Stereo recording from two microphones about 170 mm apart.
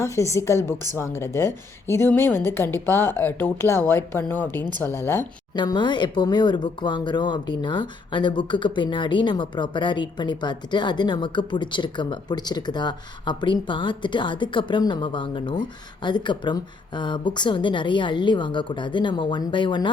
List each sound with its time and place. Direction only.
0.0 s a woman's voice: 15° left (ahead or behind)
5.5 s speech: 25° left (ahead or behind)